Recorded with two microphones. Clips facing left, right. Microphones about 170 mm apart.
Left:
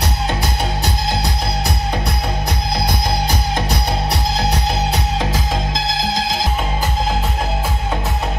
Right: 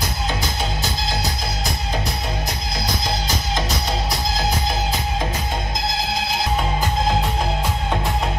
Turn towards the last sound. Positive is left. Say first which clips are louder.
# left 4 dB
turn(degrees=90)